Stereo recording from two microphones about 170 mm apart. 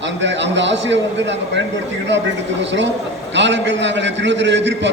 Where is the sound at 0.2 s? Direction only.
90° right.